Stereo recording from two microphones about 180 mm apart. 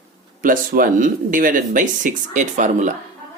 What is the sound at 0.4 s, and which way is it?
Speech, 50° right (ahead or behind).